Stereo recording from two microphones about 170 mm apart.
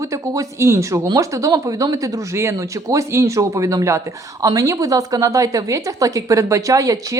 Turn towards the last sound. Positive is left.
turn(degrees=-20)  # may be behind; listen again after turning